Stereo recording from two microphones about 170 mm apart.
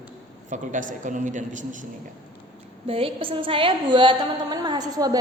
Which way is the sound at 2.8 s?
35° right (ahead or behind).